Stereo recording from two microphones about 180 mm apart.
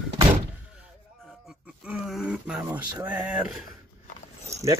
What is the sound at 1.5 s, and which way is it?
Speech, 5° right (ahead or behind).